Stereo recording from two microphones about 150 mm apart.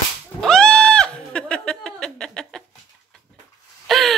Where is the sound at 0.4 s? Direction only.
5° left (ahead or behind).